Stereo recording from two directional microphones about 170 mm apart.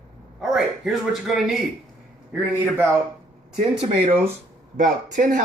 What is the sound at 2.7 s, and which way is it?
Speech, 15° right (ahead or behind).